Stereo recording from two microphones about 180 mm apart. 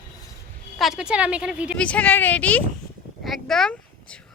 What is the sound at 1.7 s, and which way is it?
Speech, 5° left (ahead or behind).